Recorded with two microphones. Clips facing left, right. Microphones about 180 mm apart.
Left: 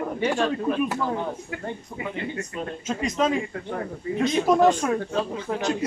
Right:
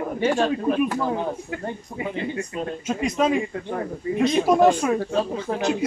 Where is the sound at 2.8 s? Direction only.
10° right (ahead or behind).